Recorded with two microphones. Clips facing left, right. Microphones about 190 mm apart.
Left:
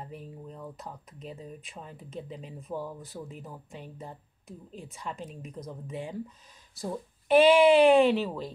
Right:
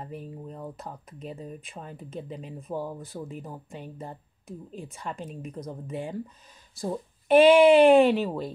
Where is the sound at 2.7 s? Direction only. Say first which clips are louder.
Right 3 dB; 25° right (ahead or behind).